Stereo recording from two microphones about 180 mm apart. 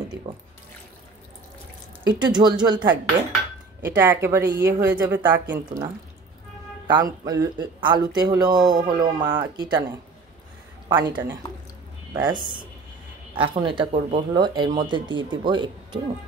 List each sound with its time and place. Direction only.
2.0 s speech: 25° right (ahead or behind)
3.8 s a woman's voice: 10° right (ahead or behind)
6.9 s speech: 20° right (ahead or behind)
10.9 s speech: 25° right (ahead or behind)